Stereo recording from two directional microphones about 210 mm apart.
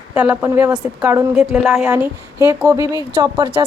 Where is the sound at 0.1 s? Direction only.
5° right (ahead or behind).